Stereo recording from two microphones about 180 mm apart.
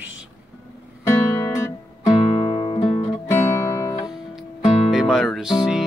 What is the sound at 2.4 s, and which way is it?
Music, 25° left (ahead or behind).